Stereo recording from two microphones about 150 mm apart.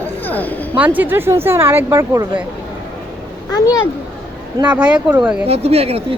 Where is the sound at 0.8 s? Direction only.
10° right (ahead or behind).